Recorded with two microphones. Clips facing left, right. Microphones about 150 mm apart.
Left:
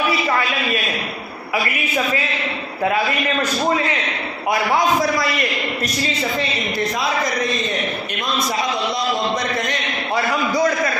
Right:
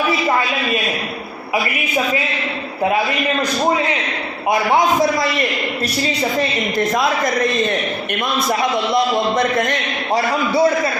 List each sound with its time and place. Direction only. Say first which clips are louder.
6.7 s a man's voice: right 6 dB; 50° right (ahead or behind)
8.4 s a man's voice: right 5 dB; 55° right (ahead or behind)
10.2 s a man's voice: right 3 dB; 30° right (ahead or behind)